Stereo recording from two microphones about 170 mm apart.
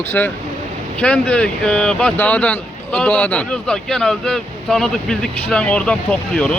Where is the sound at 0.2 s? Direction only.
10° left (ahead or behind).